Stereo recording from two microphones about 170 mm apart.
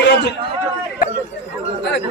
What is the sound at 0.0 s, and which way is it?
Chatter, 90° left.